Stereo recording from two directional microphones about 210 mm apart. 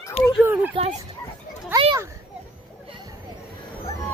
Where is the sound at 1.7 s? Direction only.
20° right (ahead or behind).